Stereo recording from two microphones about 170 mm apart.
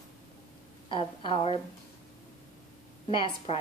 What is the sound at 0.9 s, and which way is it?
Speech, 30° left (ahead or behind).